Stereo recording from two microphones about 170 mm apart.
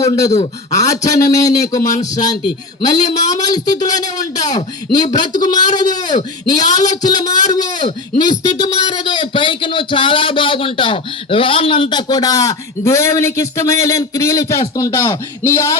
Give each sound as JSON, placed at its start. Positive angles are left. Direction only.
{"t": 0.0, "sound": "a man's voice", "side_deg": 20}
{"t": 7.0, "sound": "a man's voice", "side_deg": 25}